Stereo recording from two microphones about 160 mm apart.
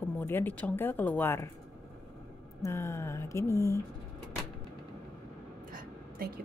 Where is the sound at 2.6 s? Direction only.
15° left (ahead or behind).